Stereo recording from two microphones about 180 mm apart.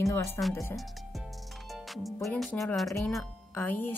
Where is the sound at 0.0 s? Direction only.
15° left (ahead or behind).